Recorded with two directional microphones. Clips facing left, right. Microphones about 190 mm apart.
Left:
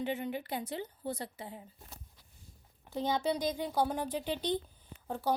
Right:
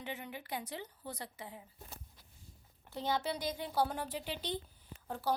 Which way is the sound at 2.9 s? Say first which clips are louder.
Left 4 dB; 15° left (ahead or behind).